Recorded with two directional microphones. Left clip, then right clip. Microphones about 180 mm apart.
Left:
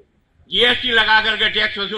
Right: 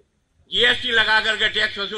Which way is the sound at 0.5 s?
40° left (ahead or behind).